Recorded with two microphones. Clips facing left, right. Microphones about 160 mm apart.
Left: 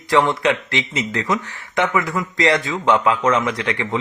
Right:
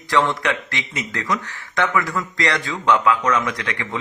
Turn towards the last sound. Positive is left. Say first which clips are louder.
# left 5 dB
turn(degrees=25)  # may be behind; listen again after turning